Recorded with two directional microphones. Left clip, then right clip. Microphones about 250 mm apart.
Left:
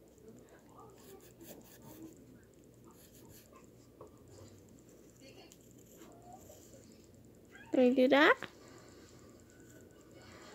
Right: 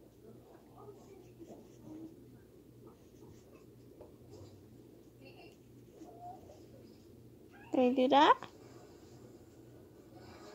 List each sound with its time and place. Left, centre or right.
7.7 s speech: centre